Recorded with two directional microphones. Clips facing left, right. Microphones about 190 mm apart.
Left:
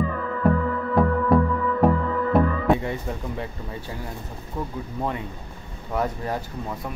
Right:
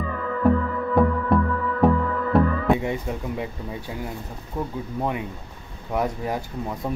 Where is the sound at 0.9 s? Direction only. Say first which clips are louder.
Left 1 dB; centre (ahead or behind).